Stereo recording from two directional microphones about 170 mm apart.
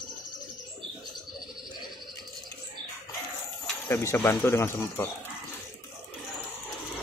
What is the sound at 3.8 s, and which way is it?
Speech, 15° left (ahead or behind).